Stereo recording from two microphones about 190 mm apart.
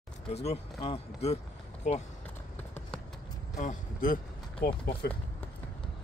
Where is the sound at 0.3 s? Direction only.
35° left (ahead or behind).